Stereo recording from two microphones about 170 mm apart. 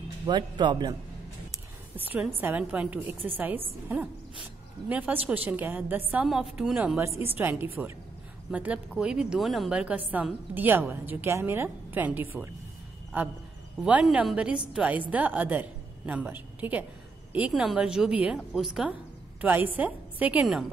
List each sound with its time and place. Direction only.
0.3 s speech: 25° right (ahead or behind)
2.0 s a woman's voice: 10° right (ahead or behind)